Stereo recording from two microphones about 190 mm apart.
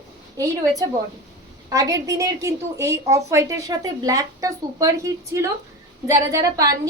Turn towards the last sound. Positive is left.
turn(degrees=-20)  # may be behind; listen again after turning